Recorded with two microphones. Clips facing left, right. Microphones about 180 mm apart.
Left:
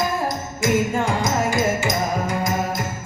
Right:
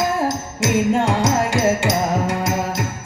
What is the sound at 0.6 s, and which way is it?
Music, 80° right.